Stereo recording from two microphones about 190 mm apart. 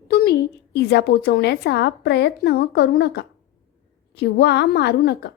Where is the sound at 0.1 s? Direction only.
55° left (ahead or behind).